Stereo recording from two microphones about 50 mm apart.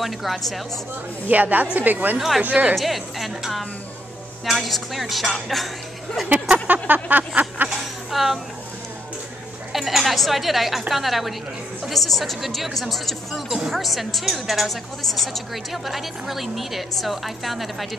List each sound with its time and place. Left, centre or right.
0.0 s a woman's voice: centre
1.3 s speech: right
2.1 s a woman's voice: centre
2.4 s a woman's voice: right
2.7 s a woman's voice: centre
6.7 s speech: right
7.7 s speech: centre
9.7 s a woman's voice: centre